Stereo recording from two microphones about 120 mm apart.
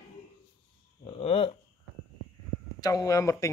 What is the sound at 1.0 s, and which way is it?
Speech, 50° left (ahead or behind).